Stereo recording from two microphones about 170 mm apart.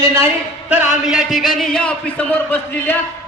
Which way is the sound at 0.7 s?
5° right (ahead or behind).